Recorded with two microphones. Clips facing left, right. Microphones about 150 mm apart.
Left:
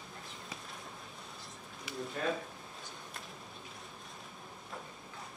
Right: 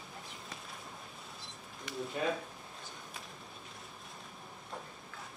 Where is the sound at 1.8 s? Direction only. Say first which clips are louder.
Right 1 dB; 5° right (ahead or behind).